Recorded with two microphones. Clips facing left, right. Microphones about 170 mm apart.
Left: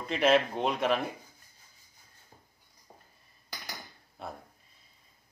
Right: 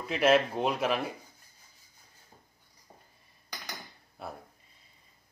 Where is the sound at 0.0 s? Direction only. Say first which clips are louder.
Right 1 dB; 5° right (ahead or behind).